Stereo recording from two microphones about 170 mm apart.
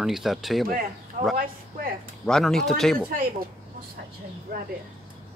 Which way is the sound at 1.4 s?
55° right (ahead or behind).